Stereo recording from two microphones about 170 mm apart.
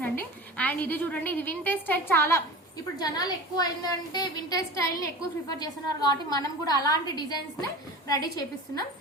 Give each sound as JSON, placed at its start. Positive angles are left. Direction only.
{"t": 0.0, "sound": "a woman's voice", "side_deg": 10}